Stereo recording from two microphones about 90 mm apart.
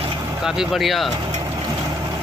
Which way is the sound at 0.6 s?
Centre (ahead or behind).